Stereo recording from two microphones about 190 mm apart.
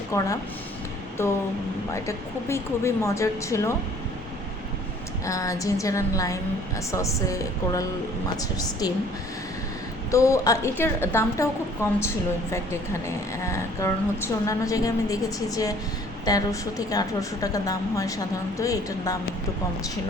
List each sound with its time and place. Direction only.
0.1 s a woman's voice: 15° left (ahead or behind)
5.2 s a woman's voice: 15° left (ahead or behind)
10.1 s a woman's voice: 15° left (ahead or behind)